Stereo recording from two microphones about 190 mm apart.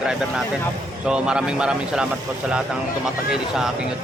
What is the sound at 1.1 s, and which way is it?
Speech, 5° right (ahead or behind).